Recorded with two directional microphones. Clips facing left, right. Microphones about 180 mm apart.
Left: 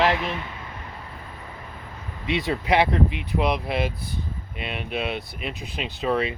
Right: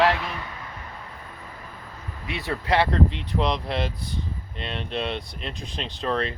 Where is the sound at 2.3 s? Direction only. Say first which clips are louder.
Left 3 dB; 20° left (ahead or behind).